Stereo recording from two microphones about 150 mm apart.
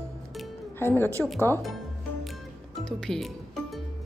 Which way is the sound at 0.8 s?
15° left (ahead or behind).